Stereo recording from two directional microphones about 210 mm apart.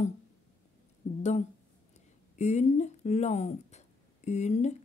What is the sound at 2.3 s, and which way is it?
A woman's voice, 35° left (ahead or behind).